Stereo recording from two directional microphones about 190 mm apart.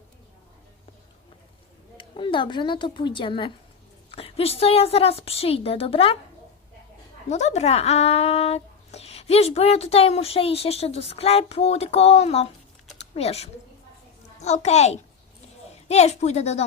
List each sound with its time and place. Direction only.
2.0 s a woman's voice: 25° left (ahead or behind)
7.3 s a woman's voice: 35° left (ahead or behind)